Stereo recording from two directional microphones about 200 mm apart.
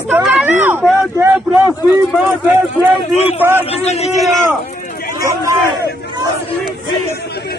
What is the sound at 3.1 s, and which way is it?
A man's voice, 30° left (ahead or behind).